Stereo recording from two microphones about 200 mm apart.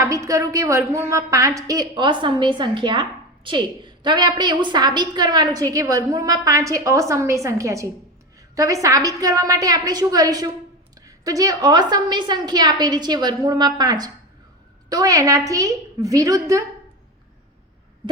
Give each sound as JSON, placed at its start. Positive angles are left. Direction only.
{"t": 0.0, "sound": "a woman's voice", "side_deg": -15}